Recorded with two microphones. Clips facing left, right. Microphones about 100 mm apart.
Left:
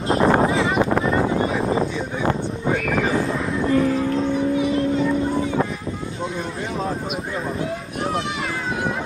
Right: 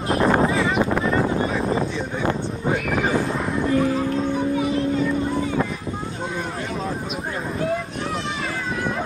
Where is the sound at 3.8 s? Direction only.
35° right (ahead or behind).